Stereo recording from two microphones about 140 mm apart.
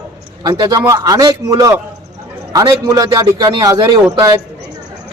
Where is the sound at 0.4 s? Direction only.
30° right (ahead or behind).